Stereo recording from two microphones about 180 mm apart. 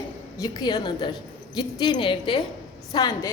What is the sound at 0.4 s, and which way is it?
Speech, 20° left (ahead or behind).